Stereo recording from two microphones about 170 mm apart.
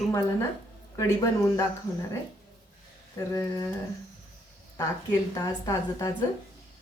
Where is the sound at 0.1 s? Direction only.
20° left (ahead or behind).